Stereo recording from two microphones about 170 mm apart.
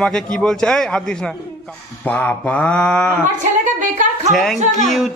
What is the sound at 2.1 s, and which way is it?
Mantra, 10° left (ahead or behind).